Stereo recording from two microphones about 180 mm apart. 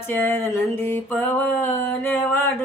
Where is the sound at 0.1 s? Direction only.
10° left (ahead or behind).